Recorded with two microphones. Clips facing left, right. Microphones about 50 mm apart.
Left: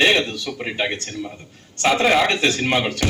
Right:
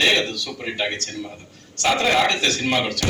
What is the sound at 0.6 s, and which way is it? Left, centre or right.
A man's voice, centre.